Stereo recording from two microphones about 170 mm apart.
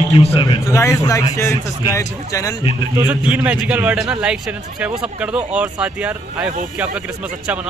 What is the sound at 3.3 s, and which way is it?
A man's voice, 5° right (ahead or behind).